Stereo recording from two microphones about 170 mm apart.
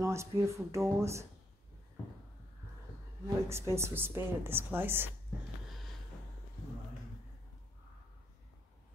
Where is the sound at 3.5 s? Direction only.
15° right (ahead or behind).